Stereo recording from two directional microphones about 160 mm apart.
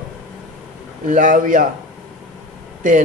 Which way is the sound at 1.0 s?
55° right (ahead or behind).